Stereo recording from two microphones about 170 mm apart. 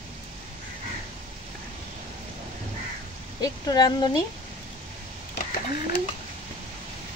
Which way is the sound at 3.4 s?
25° left (ahead or behind).